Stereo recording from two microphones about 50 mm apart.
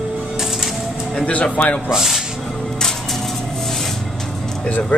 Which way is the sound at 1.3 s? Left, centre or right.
Left.